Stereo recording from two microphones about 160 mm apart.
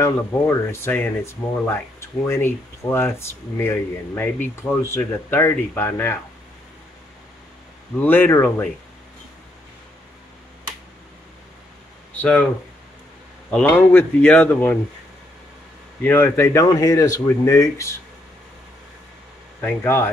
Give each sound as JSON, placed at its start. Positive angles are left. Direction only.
{"t": 0.0, "sound": "speech", "side_deg": 15}
{"t": 8.0, "sound": "speech", "side_deg": 15}
{"t": 12.2, "sound": "speech", "side_deg": 10}
{"t": 13.5, "sound": "speech", "side_deg": 10}
{"t": 16.0, "sound": "speech", "side_deg": 15}
{"t": 19.6, "sound": "speech", "side_deg": 15}